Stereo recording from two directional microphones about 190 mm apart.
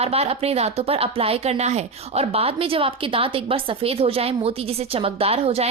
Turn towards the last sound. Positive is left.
turn(degrees=-30)  # may be behind; listen again after turning